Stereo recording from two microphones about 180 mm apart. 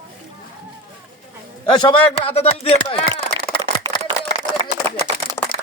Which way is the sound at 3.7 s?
40° right (ahead or behind).